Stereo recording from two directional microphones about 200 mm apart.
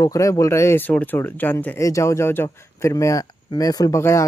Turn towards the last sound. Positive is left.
turn(degrees=15)  # may be behind; listen again after turning